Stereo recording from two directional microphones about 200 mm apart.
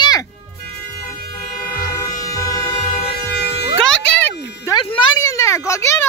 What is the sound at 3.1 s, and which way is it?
Music, 55° left (ahead or behind).